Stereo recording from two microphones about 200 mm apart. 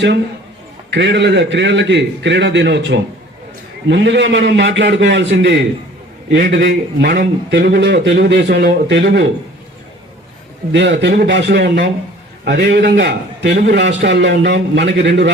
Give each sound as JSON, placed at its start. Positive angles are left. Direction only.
{"t": 0.9, "sound": "a man's voice", "side_deg": -60}
{"t": 10.7, "sound": "a man's voice", "side_deg": -60}